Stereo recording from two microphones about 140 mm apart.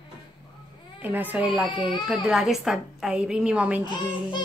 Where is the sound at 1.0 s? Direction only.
15° right (ahead or behind).